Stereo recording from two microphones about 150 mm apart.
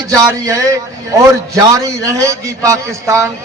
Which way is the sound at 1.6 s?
20° right (ahead or behind).